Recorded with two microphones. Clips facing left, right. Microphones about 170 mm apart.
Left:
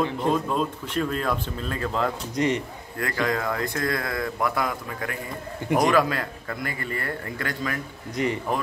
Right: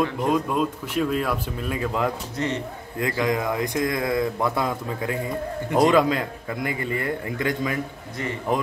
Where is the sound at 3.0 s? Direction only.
20° right (ahead or behind).